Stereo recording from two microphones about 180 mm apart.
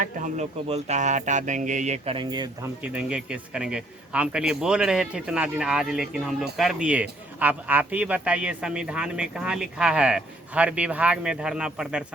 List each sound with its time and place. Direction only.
0.0 s speech: 40° right (ahead or behind)
2.1 s speech: 25° right (ahead or behind)
2.8 s a man's voice: 5° right (ahead or behind)